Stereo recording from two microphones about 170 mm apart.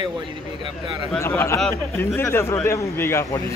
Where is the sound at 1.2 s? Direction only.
15° left (ahead or behind).